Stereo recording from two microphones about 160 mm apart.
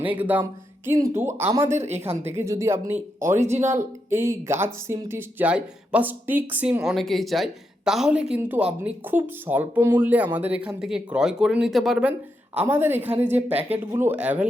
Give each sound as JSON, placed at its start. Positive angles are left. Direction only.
{"t": 0.0, "sound": "speech", "side_deg": -10}
{"t": 3.4, "sound": "speech", "side_deg": -45}
{"t": 4.1, "sound": "speech", "side_deg": -15}